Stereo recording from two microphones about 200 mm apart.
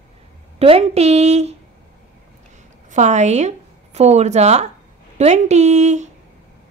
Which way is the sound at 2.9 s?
35° right (ahead or behind).